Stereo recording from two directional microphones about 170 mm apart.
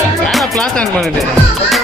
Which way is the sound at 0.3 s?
Centre (ahead or behind).